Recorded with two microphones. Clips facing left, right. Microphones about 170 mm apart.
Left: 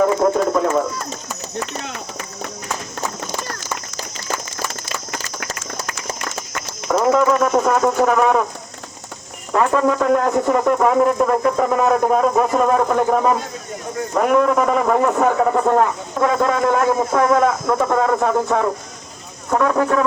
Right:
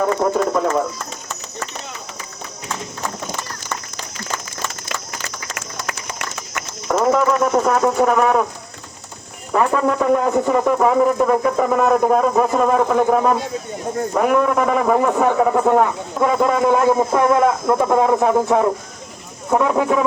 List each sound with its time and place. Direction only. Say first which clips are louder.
0.2 s a man's voice: left 2 dB; 5° right (ahead or behind)
1.8 s speech: left 4 dB; 65° left (ahead or behind)
6.8 s a sound: left 1 dB; centre (ahead or behind)
7.8 s a man's voice: even; 5° right (ahead or behind)
9.5 s a man's voice: left 1 dB; 5° right (ahead or behind)